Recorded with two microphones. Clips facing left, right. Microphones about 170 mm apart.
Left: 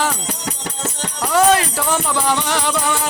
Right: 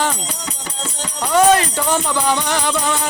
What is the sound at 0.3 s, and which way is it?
Music, 60° left (ahead or behind).